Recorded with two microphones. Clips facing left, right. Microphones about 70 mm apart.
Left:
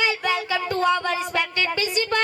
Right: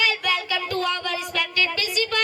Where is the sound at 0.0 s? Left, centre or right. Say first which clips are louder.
Left 1 dB; left.